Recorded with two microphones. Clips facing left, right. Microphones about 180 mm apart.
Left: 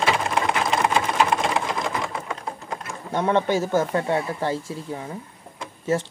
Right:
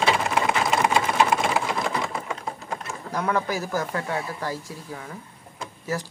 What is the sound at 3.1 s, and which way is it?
Speech, 25° left (ahead or behind).